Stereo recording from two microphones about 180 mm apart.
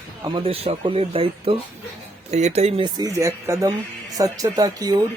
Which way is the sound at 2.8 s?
20° right (ahead or behind).